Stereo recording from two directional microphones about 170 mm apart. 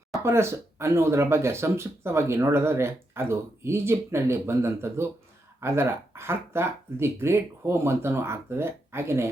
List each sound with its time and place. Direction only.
0.2 s speech: 15° right (ahead or behind)